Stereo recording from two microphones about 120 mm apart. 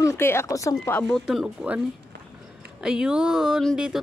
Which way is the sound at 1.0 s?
Centre (ahead or behind).